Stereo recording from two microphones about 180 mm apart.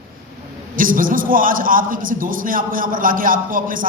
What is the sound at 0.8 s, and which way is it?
A man's voice, 50° right (ahead or behind).